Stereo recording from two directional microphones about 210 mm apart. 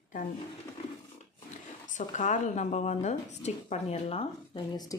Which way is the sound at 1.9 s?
35° left (ahead or behind).